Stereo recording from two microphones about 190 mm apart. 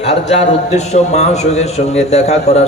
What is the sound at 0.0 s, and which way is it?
Music, 35° left (ahead or behind).